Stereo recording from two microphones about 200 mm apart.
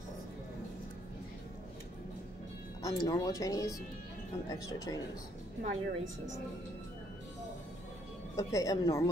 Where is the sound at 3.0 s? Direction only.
20° left (ahead or behind).